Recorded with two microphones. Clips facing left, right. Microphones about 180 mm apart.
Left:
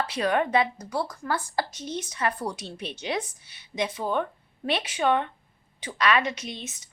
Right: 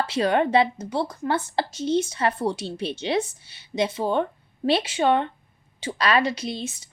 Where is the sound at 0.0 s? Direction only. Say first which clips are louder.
Right 4 dB; 30° right (ahead or behind).